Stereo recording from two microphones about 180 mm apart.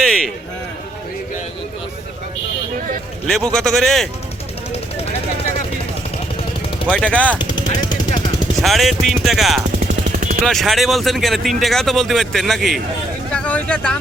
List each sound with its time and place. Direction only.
0.0 s a sound: centre (ahead or behind)
3.2 s speech: 5° left (ahead or behind)
4.7 s a sound: 35° left (ahead or behind)
6.8 s speech: 5° left (ahead or behind)
7.3 s jackhammer: 25° left (ahead or behind)
8.5 s speech: centre (ahead or behind)
10.1 s vehicle: 45° right (ahead or behind)
10.4 s speech: centre (ahead or behind)
13.3 s vehicle: 5° left (ahead or behind)